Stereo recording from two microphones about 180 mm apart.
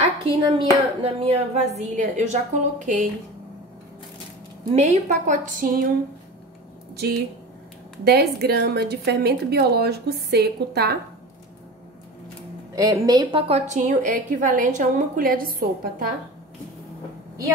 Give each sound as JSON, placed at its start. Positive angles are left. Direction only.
{"t": 0.0, "sound": "a woman's voice", "side_deg": -30}
{"t": 4.7, "sound": "a woman's voice", "side_deg": -45}
{"t": 7.0, "sound": "a woman's voice", "side_deg": -60}
{"t": 12.7, "sound": "a woman's voice", "side_deg": -20}